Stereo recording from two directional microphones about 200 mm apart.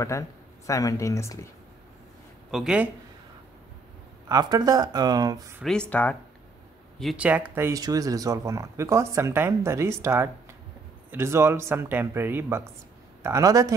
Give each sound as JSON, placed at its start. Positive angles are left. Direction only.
{"t": 0.7, "sound": "speech", "side_deg": 15}
{"t": 2.5, "sound": "speech", "side_deg": -5}
{"t": 4.3, "sound": "speech", "side_deg": -20}
{"t": 5.6, "sound": "speech", "side_deg": 5}